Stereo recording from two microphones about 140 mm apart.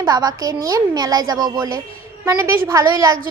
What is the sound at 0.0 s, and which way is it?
A woman's voice, 25° right (ahead or behind).